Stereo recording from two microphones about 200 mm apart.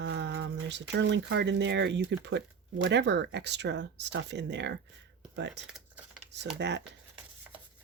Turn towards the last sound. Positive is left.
turn(degrees=-60)  # may be behind; listen again after turning